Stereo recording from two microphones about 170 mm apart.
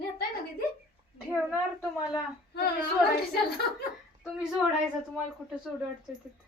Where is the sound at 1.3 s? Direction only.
5° right (ahead or behind).